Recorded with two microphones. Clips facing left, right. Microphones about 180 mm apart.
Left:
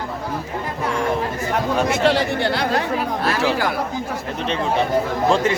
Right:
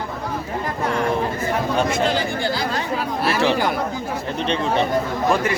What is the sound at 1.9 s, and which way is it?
Speech, 75° left (ahead or behind).